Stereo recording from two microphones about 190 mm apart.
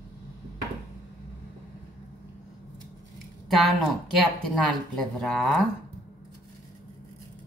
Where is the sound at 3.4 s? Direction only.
Centre (ahead or behind).